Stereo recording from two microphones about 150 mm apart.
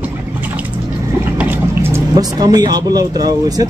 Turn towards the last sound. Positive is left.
turn(degrees=-25)  # may be behind; listen again after turning